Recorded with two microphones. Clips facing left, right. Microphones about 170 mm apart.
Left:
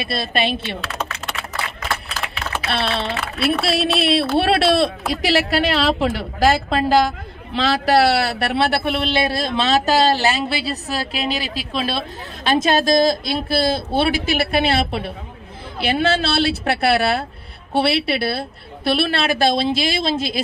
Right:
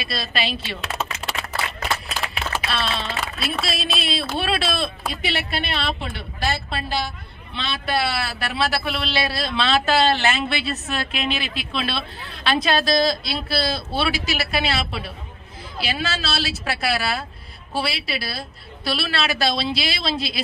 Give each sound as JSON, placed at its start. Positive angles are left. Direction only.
{"t": 0.0, "sound": "a woman's voice", "side_deg": 55}
{"t": 2.7, "sound": "a man's voice", "side_deg": 65}